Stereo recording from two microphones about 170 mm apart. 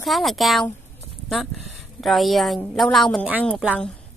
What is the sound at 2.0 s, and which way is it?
A woman's voice, centre (ahead or behind).